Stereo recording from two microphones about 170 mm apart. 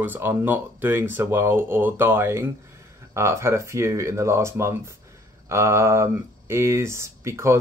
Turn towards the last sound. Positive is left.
turn(degrees=-15)  # may be behind; listen again after turning